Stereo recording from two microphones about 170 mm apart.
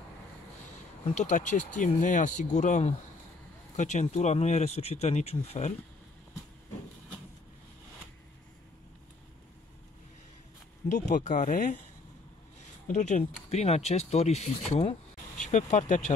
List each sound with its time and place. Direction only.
1.1 s speech: 45° left (ahead or behind)
10.9 s speech: 45° left (ahead or behind)
12.8 s speech: 45° left (ahead or behind)